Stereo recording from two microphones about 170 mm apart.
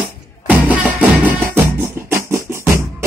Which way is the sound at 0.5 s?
10° right (ahead or behind).